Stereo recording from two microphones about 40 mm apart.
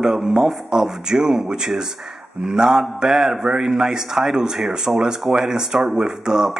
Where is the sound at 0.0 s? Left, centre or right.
Centre.